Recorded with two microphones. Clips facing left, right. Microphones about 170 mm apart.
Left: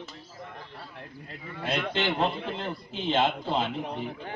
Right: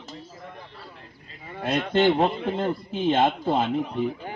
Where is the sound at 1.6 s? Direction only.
50° right (ahead or behind).